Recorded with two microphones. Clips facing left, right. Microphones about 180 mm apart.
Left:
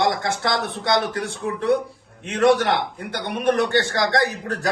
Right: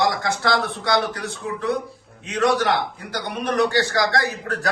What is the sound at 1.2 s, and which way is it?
Speech, 60° left (ahead or behind).